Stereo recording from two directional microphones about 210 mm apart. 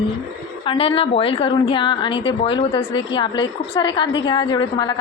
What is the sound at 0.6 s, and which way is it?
A woman's voice, 25° left (ahead or behind).